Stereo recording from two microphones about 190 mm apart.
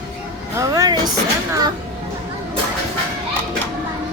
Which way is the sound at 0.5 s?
20° right (ahead or behind).